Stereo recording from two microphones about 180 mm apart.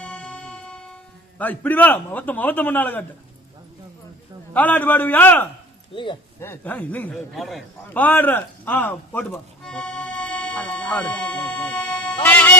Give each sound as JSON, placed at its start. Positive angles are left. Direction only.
{"t": 0.0, "sound": "music", "side_deg": 5}
{"t": 1.4, "sound": "a man's voice", "side_deg": 10}
{"t": 4.5, "sound": "a man's voice", "side_deg": 10}
{"t": 5.9, "sound": "speech", "side_deg": 25}
{"t": 6.4, "sound": "a man's voice", "side_deg": 10}
{"t": 12.2, "sound": "music", "side_deg": 10}